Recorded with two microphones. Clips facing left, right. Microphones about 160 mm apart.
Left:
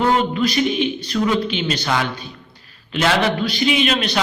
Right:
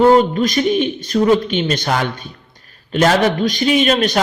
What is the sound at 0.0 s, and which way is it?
A man's voice, 40° right (ahead or behind).